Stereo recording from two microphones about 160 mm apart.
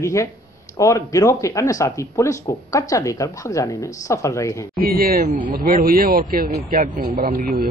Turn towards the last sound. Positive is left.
turn(degrees=-65)  # may be behind; listen again after turning